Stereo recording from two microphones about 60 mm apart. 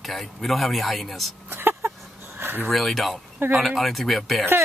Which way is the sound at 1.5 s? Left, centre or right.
Right.